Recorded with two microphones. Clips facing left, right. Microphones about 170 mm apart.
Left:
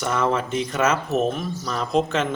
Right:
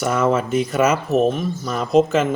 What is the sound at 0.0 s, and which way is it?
Speech, 5° right (ahead or behind).